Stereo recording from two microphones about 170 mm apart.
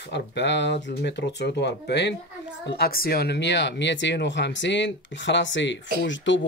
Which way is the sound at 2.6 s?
65° left (ahead or behind).